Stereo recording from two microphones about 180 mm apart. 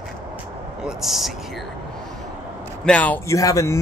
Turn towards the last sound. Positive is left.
turn(degrees=15)  # may be behind; listen again after turning